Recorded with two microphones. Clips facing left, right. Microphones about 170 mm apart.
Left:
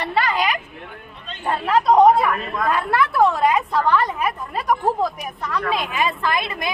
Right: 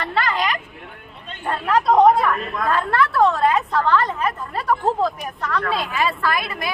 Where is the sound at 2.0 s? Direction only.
10° left (ahead or behind).